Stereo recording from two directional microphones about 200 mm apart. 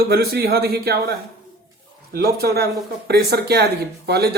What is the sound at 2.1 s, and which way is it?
Speech, 50° right (ahead or behind).